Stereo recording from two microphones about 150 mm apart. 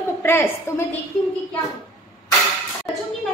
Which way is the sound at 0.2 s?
15° left (ahead or behind).